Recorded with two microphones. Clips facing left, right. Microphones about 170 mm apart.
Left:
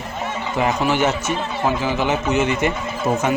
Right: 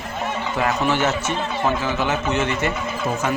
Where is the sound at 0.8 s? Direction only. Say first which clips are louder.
Left 1 dB; 15° left (ahead or behind).